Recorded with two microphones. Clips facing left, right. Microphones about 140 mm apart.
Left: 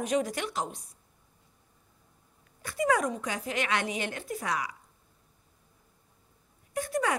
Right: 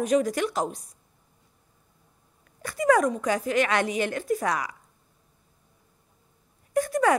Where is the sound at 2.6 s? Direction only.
45° right (ahead or behind).